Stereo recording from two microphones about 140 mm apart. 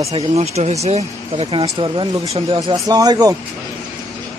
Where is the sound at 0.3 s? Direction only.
50° right (ahead or behind).